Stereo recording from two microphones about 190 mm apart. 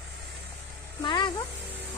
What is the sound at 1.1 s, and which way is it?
Speech, 25° left (ahead or behind).